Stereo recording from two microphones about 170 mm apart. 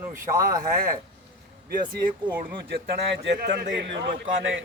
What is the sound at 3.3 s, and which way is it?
A man's voice, 75° right (ahead or behind).